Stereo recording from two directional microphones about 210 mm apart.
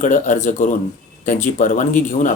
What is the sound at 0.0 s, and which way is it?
Speech, 35° left (ahead or behind).